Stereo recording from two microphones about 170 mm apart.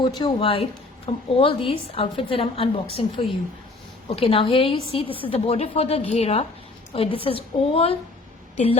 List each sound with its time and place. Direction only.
0.0 s a woman's voice: 25° left (ahead or behind)